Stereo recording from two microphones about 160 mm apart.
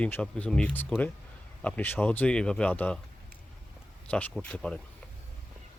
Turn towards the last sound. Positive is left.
turn(degrees=5)  # may be behind; listen again after turning